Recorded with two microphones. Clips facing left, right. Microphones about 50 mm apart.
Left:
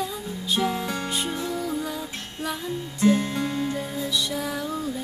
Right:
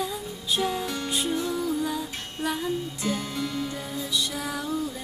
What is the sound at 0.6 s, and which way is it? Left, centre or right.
Music, left.